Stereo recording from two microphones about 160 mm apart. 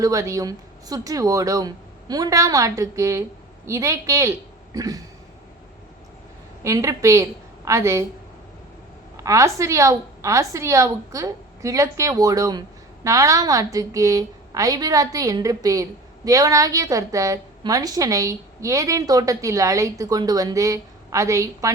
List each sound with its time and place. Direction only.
0.0 s a woman's voice: 20° right (ahead or behind)
6.6 s a woman's voice: 20° right (ahead or behind)
9.1 s a woman's voice: 20° right (ahead or behind)